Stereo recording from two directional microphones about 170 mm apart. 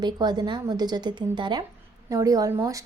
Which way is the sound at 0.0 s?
25° right (ahead or behind).